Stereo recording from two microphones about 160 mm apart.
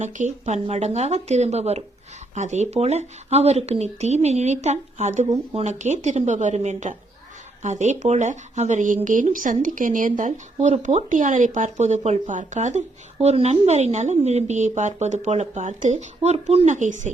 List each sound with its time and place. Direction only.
0.0 s speech: 45° right (ahead or behind)